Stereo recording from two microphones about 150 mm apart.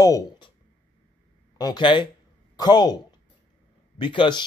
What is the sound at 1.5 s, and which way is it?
Speech, 30° left (ahead or behind).